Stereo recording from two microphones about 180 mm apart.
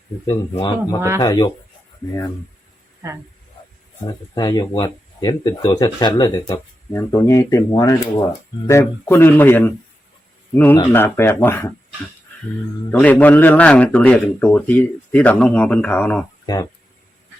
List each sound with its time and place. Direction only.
0.5 s speech: 25° left (ahead or behind)
2.0 s a man's voice: 10° left (ahead or behind)
4.0 s a man's voice: 20° left (ahead or behind)
12.9 s a man's voice: 10° left (ahead or behind)